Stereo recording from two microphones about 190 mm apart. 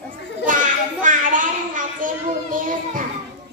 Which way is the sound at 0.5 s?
45° right (ahead or behind).